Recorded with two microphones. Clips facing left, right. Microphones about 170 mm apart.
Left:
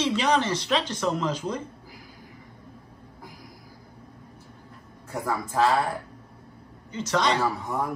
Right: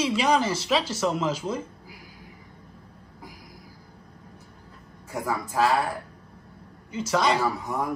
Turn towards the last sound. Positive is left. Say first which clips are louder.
# even
turn(degrees=0)  # may be behind; listen again after turning